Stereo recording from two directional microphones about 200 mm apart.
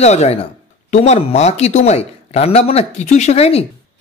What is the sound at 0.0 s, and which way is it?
Speech, 35° left (ahead or behind).